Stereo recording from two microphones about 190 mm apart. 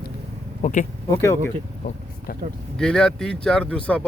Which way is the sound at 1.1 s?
15° left (ahead or behind).